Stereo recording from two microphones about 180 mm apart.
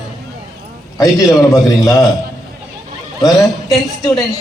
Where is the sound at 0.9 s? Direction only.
20° left (ahead or behind).